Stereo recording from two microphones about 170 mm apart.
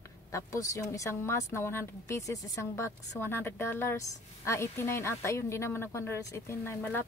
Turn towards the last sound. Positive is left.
turn(degrees=15)  # may be behind; listen again after turning